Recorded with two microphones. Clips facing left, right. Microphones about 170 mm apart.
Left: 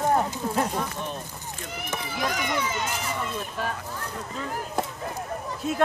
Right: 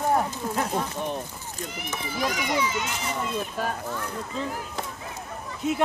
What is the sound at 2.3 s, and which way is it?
Speech, 50° left (ahead or behind).